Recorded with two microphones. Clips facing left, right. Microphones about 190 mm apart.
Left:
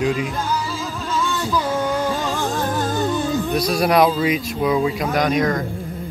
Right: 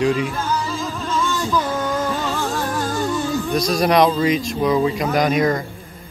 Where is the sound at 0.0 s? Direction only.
Centre (ahead or behind).